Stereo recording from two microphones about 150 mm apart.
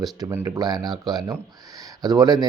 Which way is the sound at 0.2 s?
20° right (ahead or behind).